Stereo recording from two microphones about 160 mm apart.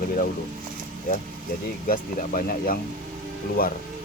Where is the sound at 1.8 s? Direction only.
60° left (ahead or behind).